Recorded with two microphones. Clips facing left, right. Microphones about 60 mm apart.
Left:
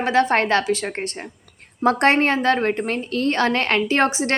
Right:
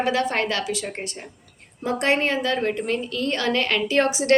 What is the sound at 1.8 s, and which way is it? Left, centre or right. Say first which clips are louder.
A woman's voice: left 5 dB; left.